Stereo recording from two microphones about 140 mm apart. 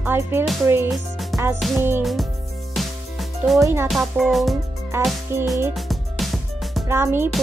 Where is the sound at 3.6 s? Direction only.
20° right (ahead or behind).